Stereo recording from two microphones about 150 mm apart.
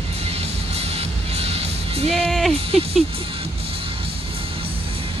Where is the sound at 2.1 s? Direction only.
5° left (ahead or behind).